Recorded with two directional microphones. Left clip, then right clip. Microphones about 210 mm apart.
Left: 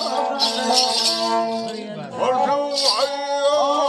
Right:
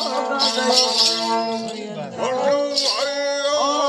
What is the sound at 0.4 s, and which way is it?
Music, 5° right (ahead or behind).